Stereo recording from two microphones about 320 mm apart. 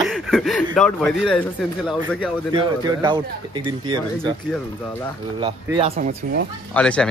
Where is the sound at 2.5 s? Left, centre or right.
Centre.